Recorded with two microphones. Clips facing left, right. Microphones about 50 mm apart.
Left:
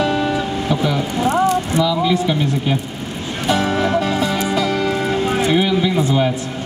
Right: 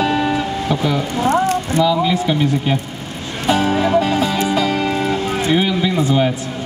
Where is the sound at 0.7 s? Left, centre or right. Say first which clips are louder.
Even; centre.